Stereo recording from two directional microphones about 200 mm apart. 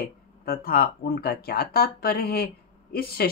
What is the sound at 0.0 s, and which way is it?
Speech, 50° left (ahead or behind).